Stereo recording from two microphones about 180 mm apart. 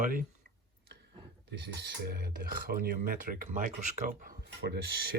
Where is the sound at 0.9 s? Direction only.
70° right (ahead or behind).